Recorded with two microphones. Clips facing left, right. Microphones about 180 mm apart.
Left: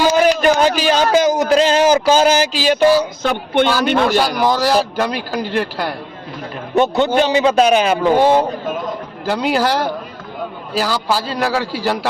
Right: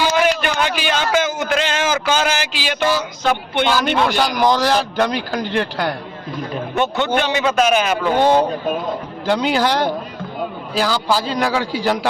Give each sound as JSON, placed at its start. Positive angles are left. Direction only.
{"t": 0.0, "sound": "a man's voice", "side_deg": 40}
{"t": 4.2, "sound": "a man's voice", "side_deg": 5}
{"t": 6.7, "sound": "a man's voice", "side_deg": 40}
{"t": 8.2, "sound": "a man's voice", "side_deg": 5}